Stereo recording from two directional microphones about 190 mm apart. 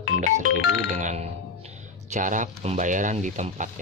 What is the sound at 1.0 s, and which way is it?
Speech, 40° right (ahead or behind).